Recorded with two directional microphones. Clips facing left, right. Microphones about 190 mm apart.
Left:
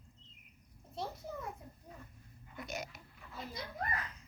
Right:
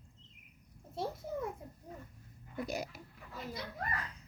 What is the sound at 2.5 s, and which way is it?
Speech, 35° right (ahead or behind).